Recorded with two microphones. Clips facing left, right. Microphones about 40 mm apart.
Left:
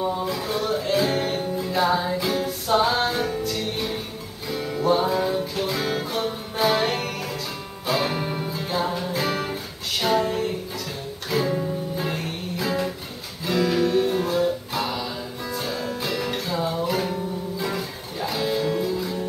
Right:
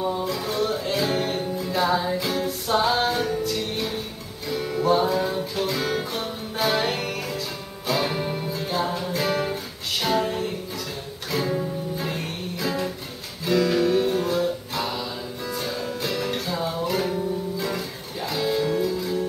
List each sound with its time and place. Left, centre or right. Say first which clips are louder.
0.3 s music: even; centre